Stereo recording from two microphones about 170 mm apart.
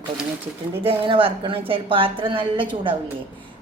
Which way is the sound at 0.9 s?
30° right (ahead or behind).